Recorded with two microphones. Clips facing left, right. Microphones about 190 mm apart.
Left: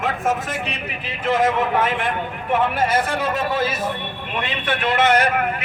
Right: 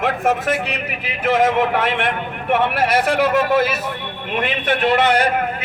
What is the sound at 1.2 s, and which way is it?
A man's voice, 75° right (ahead or behind).